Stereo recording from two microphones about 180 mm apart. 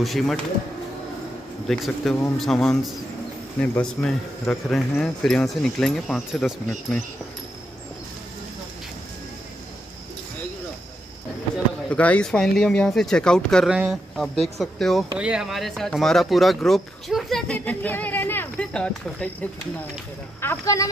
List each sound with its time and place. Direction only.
0.0 s speech: centre (ahead or behind)
1.7 s speech: 5° left (ahead or behind)
11.5 s speech: 5° left (ahead or behind)
20.3 s speech: 15° left (ahead or behind)